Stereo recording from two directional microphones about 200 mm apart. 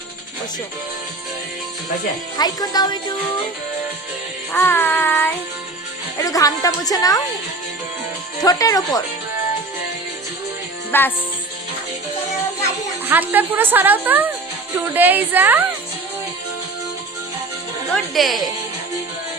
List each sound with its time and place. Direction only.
2.4 s speech: 20° left (ahead or behind)
4.5 s a woman's voice: 10° left (ahead or behind)
8.4 s speech: 20° left (ahead or behind)
10.9 s a woman's voice: 10° left (ahead or behind)
13.1 s speech: 10° right (ahead or behind)
17.9 s speech: centre (ahead or behind)